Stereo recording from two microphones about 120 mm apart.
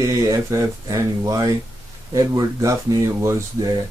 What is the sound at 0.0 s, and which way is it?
Speech, 25° right (ahead or behind).